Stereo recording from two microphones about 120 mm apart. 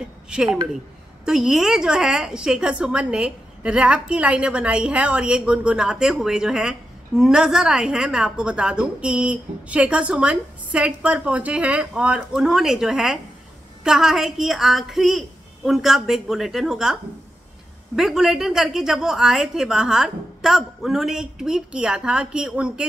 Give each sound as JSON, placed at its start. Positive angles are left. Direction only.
{"t": 0.3, "sound": "a woman's voice", "side_deg": -5}